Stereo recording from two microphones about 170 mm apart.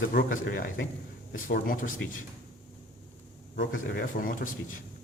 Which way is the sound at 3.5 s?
65° left (ahead or behind).